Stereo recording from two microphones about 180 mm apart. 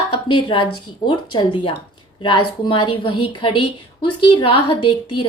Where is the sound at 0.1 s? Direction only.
30° left (ahead or behind).